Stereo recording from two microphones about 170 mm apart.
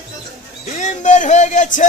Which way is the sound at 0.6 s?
45° left (ahead or behind).